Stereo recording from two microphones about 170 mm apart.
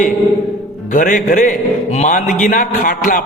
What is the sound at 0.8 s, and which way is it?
Speech, 60° left (ahead or behind).